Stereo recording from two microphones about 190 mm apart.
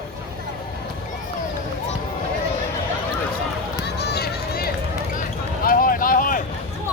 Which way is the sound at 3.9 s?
60° left (ahead or behind).